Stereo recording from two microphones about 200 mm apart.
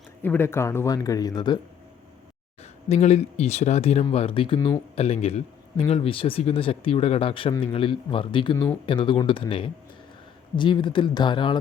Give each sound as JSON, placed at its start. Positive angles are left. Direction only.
{"t": 0.2, "sound": "speech", "side_deg": 10}
{"t": 2.9, "sound": "speech", "side_deg": 30}